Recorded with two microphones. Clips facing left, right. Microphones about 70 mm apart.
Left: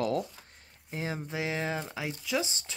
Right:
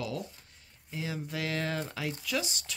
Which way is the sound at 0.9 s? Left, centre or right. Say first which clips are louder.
Left 2 dB; left.